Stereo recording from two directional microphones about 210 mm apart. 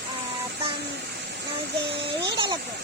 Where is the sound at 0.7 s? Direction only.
50° right (ahead or behind).